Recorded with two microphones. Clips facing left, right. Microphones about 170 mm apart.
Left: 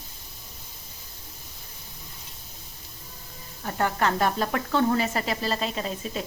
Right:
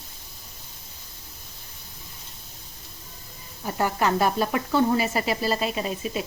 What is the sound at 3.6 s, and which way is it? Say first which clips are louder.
Sizzle: right 1 dB; 10° right (ahead or behind).